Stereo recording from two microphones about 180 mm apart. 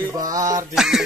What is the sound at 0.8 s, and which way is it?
Speech, centre (ahead or behind).